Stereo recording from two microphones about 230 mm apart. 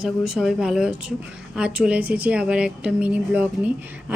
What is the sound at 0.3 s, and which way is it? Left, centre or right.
Speech, centre.